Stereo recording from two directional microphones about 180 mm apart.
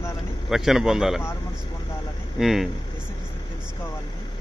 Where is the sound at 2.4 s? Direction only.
Centre (ahead or behind).